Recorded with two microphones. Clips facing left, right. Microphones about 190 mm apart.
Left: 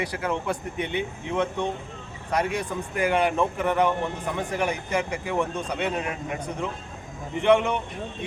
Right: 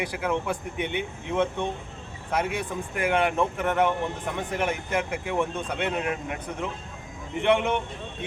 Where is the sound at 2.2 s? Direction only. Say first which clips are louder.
Left 2 dB; 5° right (ahead or behind).